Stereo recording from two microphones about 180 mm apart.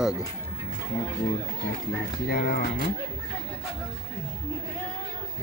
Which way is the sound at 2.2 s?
55° left (ahead or behind).